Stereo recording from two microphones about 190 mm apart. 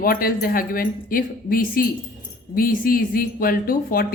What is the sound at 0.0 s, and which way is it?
A woman's voice, 50° left (ahead or behind).